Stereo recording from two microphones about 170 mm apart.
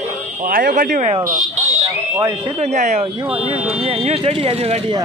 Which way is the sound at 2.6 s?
40° right (ahead or behind).